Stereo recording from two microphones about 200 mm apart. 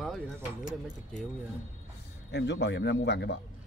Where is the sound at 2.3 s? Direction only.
60° left (ahead or behind).